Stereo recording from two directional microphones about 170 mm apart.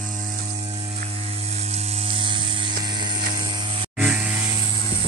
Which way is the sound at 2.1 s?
30° right (ahead or behind).